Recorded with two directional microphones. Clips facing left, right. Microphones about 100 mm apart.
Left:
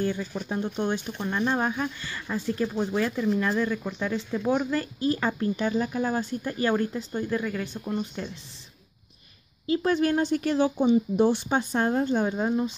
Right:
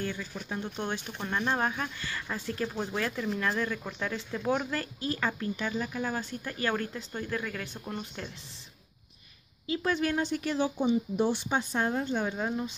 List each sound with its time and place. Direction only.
0.0 s speech: 30° left (ahead or behind)
0.7 s speech: 15° left (ahead or behind)
5.2 s speech: 30° left (ahead or behind)
6.4 s speech: 15° left (ahead or behind)
7.6 s speech: 5° right (ahead or behind)
8.2 s speech: 10° left (ahead or behind)
9.7 s speech: 40° left (ahead or behind); by 11.3 s 60° left (ahead or behind)
11.4 s speech: 45° left (ahead or behind)
12.3 s speech: 25° left (ahead or behind)